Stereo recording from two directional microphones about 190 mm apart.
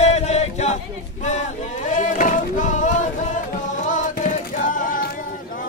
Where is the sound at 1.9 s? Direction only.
40° left (ahead or behind).